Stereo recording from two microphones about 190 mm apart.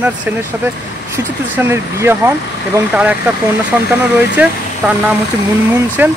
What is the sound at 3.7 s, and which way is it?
Speech, 10° right (ahead or behind).